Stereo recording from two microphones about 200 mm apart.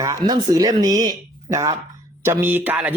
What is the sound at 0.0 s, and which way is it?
Speech, 15° right (ahead or behind).